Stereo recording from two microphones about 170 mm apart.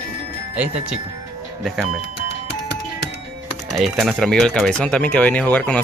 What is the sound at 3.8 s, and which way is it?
Speech, centre (ahead or behind).